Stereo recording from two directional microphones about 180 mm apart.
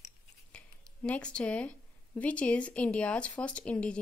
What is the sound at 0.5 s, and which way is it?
Speech, 5° left (ahead or behind).